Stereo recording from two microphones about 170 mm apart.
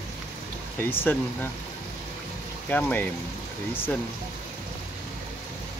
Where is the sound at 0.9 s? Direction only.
10° left (ahead or behind).